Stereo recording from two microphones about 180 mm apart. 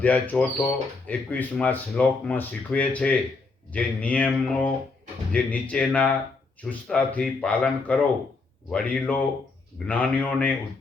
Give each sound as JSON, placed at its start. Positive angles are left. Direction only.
{"t": 0.0, "sound": "speech", "side_deg": 5}